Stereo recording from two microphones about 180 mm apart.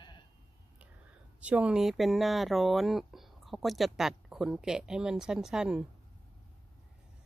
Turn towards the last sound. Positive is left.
turn(degrees=-5)  # may be behind; listen again after turning